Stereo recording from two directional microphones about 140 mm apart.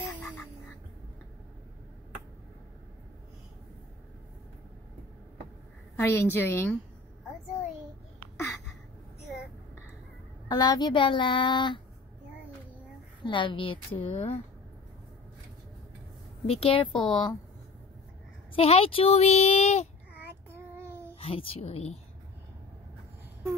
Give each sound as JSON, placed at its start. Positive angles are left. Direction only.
{"t": 5.9, "sound": "a woman's voice", "side_deg": 15}
{"t": 10.5, "sound": "speech", "side_deg": 30}
{"t": 13.2, "sound": "speech", "side_deg": 35}
{"t": 16.4, "sound": "speech", "side_deg": 40}
{"t": 18.5, "sound": "speech", "side_deg": 45}
{"t": 20.5, "sound": "child singing", "side_deg": -15}
{"t": 21.2, "sound": "speech", "side_deg": 45}